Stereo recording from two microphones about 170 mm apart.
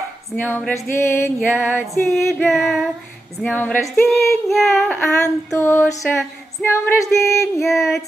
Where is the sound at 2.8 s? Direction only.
Centre (ahead or behind).